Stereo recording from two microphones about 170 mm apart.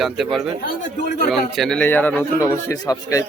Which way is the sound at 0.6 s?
55° left (ahead or behind).